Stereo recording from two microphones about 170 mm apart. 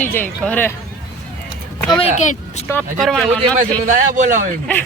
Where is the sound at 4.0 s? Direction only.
50° right (ahead or behind).